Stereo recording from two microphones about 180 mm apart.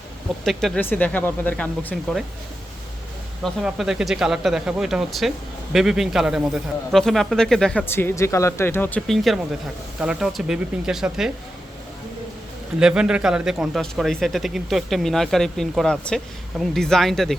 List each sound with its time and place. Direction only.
0.4 s speech: centre (ahead or behind)
3.4 s speech: centre (ahead or behind)
12.8 s speech: 5° right (ahead or behind)